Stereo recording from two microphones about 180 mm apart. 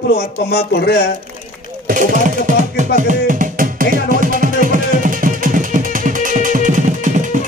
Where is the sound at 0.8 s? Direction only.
65° left (ahead or behind).